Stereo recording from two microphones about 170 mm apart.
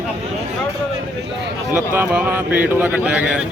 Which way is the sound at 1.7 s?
10° right (ahead or behind).